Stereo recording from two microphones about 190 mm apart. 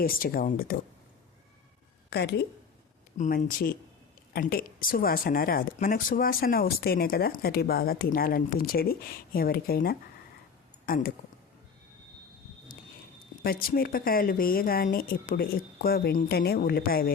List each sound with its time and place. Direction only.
0.0 s speech: 50° left (ahead or behind)
2.0 s a woman's voice: 60° left (ahead or behind)
3.2 s speech: 50° left (ahead or behind)
13.4 s speech: 50° left (ahead or behind)